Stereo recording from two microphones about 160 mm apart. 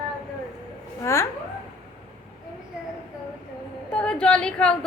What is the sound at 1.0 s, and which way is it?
Speech, 15° left (ahead or behind).